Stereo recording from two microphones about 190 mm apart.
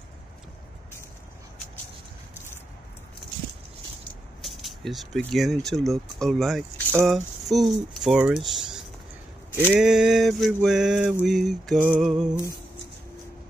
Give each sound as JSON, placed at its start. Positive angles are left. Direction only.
{"t": 4.4, "sound": "speech", "side_deg": 0}
{"t": 9.8, "sound": "speech", "side_deg": -5}